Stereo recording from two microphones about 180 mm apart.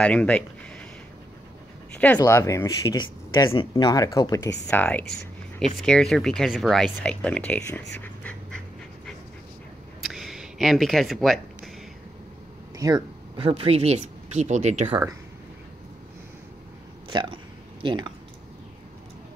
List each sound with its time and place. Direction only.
0.0 s speech: 5° left (ahead or behind)
2.1 s speech: 15° left (ahead or behind)
4.6 s speech: 10° left (ahead or behind)
8.0 s dog: 5° left (ahead or behind)
10.0 s a sound: centre (ahead or behind)
12.7 s speech: 20° right (ahead or behind); by 14.9 s 40° right (ahead or behind)
17.1 s speech: 25° right (ahead or behind)